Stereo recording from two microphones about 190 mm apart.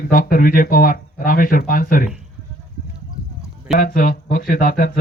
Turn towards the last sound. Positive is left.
turn(degrees=50)  # may be behind; listen again after turning